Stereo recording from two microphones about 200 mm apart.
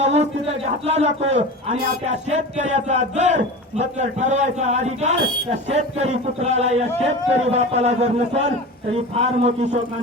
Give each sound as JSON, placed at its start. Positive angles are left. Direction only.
{"t": 0.0, "sound": "a man's voice", "side_deg": -35}